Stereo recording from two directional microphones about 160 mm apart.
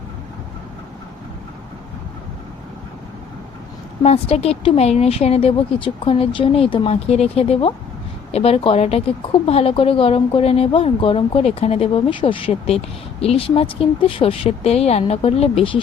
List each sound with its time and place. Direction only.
4.0 s a woman's voice: 40° left (ahead or behind)